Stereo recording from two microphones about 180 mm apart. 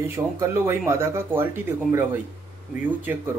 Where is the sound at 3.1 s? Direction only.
10° right (ahead or behind).